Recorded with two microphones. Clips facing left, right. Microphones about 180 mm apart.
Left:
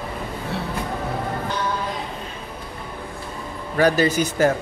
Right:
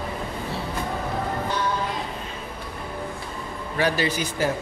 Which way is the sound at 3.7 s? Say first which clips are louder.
Left 6 dB; 45° left (ahead or behind).